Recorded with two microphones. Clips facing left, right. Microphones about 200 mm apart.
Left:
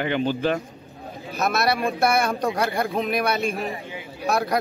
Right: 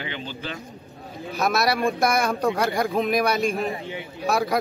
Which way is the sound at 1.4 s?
Centre (ahead or behind).